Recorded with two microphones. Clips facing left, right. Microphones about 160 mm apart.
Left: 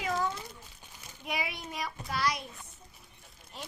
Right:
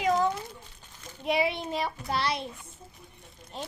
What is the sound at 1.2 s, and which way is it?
A child's voice, 25° right (ahead or behind).